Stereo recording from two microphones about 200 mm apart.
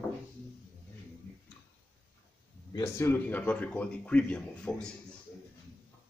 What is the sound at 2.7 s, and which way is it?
Speech, 15° left (ahead or behind).